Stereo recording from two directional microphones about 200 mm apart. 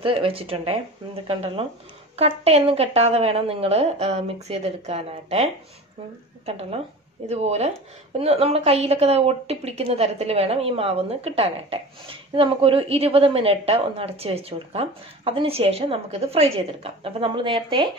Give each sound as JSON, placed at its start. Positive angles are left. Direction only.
{"t": 0.0, "sound": "a woman's voice", "side_deg": -25}